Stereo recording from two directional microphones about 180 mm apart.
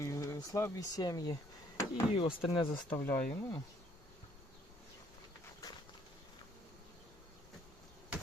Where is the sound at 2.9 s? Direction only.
15° left (ahead or behind).